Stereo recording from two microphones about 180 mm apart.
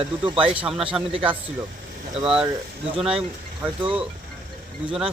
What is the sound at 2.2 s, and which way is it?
Speech, 5° right (ahead or behind).